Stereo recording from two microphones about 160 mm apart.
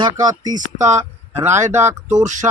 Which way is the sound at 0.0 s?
25° right (ahead or behind).